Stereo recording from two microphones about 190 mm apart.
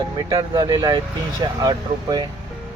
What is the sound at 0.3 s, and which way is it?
Speech, 25° right (ahead or behind).